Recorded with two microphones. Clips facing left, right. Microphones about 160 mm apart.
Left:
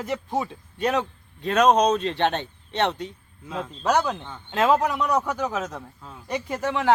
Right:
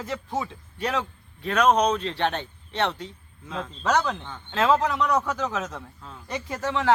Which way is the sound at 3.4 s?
10° left (ahead or behind).